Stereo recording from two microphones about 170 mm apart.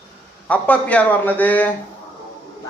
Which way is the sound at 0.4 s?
10° left (ahead or behind).